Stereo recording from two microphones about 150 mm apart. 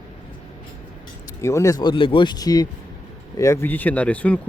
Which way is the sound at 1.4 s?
20° left (ahead or behind).